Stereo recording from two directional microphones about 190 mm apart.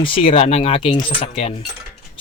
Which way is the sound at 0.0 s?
30° left (ahead or behind).